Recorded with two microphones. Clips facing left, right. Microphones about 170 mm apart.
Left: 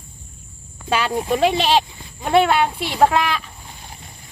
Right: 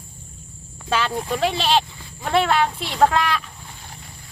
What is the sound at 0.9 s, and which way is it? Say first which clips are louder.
Speech: left 3 dB; 10° left (ahead or behind).